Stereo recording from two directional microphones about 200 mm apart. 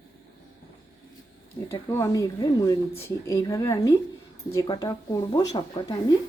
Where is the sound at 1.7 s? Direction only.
15° left (ahead or behind).